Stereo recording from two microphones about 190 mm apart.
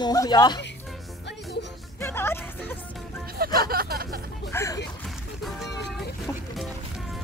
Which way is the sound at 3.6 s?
50° right (ahead or behind).